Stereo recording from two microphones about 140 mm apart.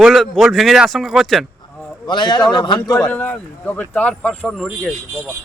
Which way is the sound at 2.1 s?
35° left (ahead or behind).